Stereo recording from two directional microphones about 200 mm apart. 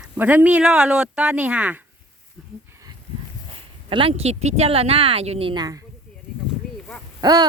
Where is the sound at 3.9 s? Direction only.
25° right (ahead or behind).